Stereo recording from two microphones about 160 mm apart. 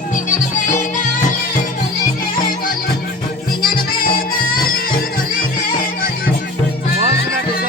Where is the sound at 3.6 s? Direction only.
65° left (ahead or behind).